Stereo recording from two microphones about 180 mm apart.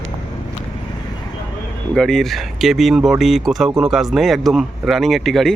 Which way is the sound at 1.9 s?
5° left (ahead or behind).